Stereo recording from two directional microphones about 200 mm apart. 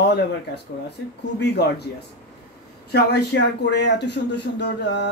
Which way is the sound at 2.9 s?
55° left (ahead or behind).